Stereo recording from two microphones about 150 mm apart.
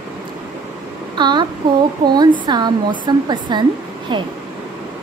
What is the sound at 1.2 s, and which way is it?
Child singing, 30° right (ahead or behind).